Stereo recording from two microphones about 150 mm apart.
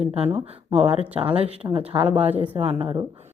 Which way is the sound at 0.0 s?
45° right (ahead or behind).